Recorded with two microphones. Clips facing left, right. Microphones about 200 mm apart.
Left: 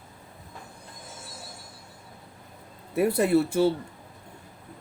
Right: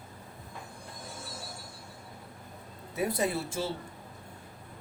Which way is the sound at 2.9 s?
65° left (ahead or behind).